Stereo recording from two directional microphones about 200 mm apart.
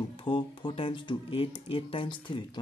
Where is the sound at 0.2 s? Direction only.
25° left (ahead or behind).